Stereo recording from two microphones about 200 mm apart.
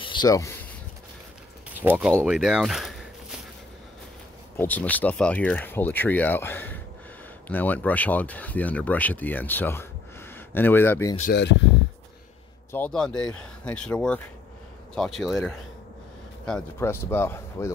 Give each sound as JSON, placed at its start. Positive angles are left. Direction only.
{"t": 0.0, "sound": "a sound", "side_deg": 25}
{"t": 1.8, "sound": "speech", "side_deg": -5}
{"t": 4.6, "sound": "speech", "side_deg": 10}
{"t": 11.3, "sound": "speech", "side_deg": 60}
{"t": 12.7, "sound": "speech", "side_deg": 5}